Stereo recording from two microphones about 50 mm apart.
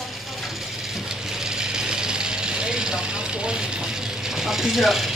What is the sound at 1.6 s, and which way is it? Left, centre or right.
Vehicle, centre.